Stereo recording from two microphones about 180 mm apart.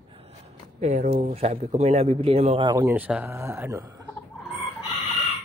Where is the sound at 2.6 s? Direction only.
15° right (ahead or behind).